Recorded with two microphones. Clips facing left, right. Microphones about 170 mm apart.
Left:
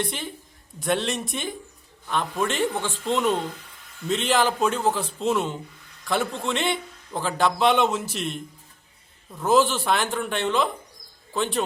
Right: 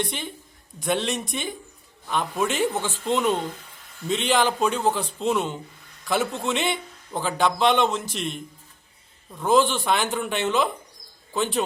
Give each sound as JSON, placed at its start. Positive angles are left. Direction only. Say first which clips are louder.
{"t": 0.0, "sound": "a man's voice", "louder": "even", "side_deg": 0}